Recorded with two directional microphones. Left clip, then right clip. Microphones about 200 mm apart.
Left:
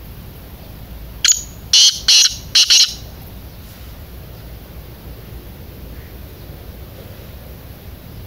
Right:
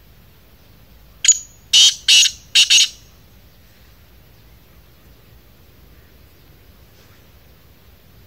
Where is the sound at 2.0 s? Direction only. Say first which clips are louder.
Left 1 dB; 15° left (ahead or behind).